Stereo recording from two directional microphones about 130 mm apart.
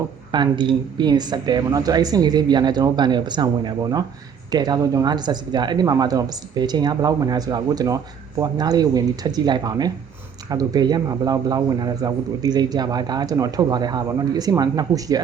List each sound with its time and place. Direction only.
0.3 s a man's voice: 35° right (ahead or behind)